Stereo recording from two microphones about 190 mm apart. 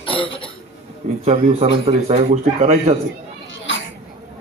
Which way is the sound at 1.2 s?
35° right (ahead or behind).